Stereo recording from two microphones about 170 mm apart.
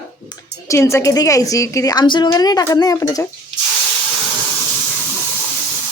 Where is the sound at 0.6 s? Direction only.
15° left (ahead or behind).